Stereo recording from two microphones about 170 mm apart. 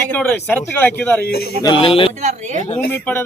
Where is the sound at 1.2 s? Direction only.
65° left (ahead or behind).